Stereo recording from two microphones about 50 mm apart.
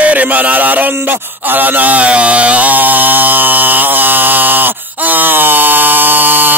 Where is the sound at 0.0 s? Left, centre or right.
Right.